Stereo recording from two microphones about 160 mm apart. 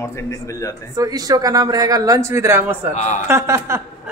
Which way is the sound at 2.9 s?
45° left (ahead or behind).